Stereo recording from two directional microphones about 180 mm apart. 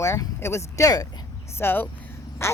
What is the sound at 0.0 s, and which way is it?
Speech, 15° left (ahead or behind).